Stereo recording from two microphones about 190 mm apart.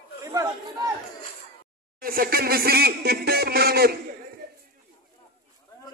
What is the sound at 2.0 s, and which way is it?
Speech, 50° right (ahead or behind).